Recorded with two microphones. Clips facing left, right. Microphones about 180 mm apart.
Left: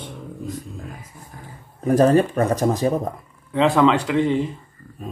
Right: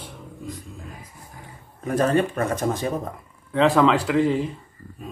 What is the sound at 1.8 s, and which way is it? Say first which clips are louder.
Speech: left 5 dB; 35° left (ahead or behind).